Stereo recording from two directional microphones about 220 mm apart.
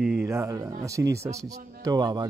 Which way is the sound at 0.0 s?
5° right (ahead or behind).